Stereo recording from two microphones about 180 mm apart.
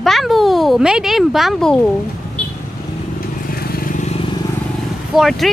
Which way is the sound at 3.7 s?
50° left (ahead or behind).